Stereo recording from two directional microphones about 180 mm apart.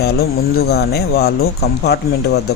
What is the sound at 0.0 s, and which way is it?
A man's voice, 60° left (ahead or behind).